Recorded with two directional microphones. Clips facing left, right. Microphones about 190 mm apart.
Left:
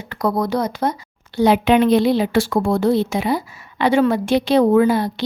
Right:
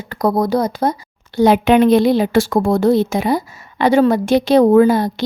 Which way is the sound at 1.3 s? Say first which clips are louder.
Right 3 dB; 45° right (ahead or behind).